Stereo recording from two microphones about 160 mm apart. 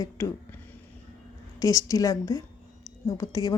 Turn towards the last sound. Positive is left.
turn(degrees=20)  # may be behind; listen again after turning